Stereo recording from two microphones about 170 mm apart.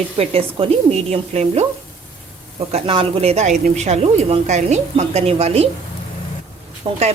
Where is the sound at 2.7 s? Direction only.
35° right (ahead or behind).